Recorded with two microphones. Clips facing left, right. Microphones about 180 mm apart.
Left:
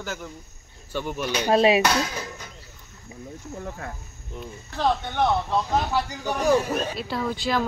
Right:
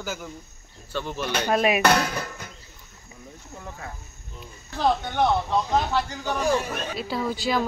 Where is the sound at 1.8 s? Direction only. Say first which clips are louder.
Right 2 dB; 55° right (ahead or behind).